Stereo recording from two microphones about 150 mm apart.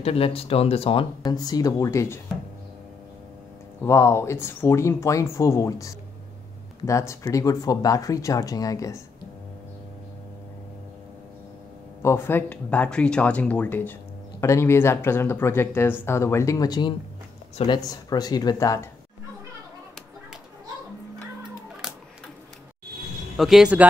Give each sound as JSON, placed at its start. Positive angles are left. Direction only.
{"t": 0.0, "sound": "speech", "side_deg": 40}
{"t": 1.2, "sound": "speech", "side_deg": 25}
{"t": 3.8, "sound": "speech", "side_deg": 20}
{"t": 12.0, "sound": "speech", "side_deg": 15}
{"t": 23.3, "sound": "speech", "side_deg": 0}